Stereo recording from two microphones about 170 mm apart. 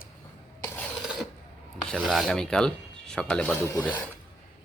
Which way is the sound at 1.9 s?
Centre (ahead or behind).